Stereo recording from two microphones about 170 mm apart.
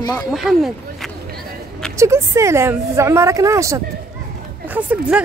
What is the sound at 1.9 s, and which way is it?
A woman's voice, 15° right (ahead or behind).